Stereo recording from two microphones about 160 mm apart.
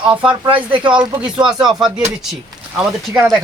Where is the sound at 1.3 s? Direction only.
5° right (ahead or behind).